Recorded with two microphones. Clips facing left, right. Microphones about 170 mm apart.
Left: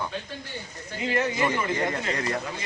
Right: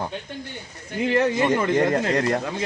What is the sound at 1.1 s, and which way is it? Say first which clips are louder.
Speech: right 5 dB; 60° right (ahead or behind).